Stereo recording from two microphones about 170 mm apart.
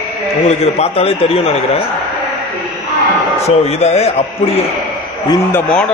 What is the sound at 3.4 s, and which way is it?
Speech, 40° left (ahead or behind).